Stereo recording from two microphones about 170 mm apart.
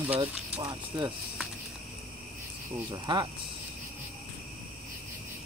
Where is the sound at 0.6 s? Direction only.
25° right (ahead or behind).